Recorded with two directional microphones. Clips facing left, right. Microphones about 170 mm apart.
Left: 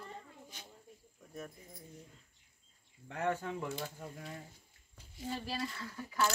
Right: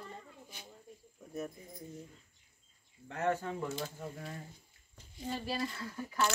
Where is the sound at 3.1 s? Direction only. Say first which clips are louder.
Right 2 dB; 15° left (ahead or behind).